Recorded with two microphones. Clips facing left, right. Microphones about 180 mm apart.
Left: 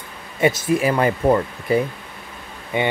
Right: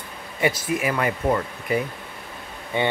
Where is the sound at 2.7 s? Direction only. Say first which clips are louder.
Left 2 dB; 15° left (ahead or behind).